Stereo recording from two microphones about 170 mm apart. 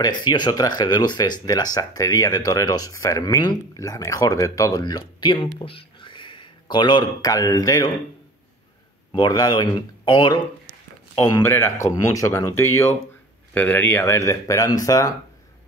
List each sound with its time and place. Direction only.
0.0 s speech: 25° left (ahead or behind)
9.1 s speech: 25° left (ahead or behind)